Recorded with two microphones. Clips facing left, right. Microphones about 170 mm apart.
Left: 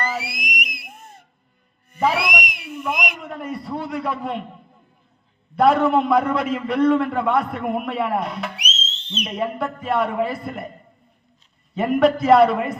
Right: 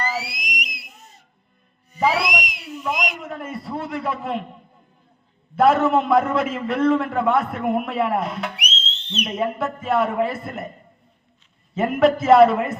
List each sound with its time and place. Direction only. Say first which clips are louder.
0.0 s music: even; 55° left (ahead or behind)
2.2 s whistle: even; 55° left (ahead or behind)
2.8 s a sound: right 1 dB; centre (ahead or behind)
5.5 s a man's voice: even; centre (ahead or behind)
8.5 s whistle: right 1 dB; 60° right (ahead or behind)
9.2 s a man's voice: right 1 dB; centre (ahead or behind)
11.7 s a man's voice: even; centre (ahead or behind)